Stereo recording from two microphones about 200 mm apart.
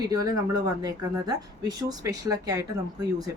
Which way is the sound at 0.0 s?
20° right (ahead or behind).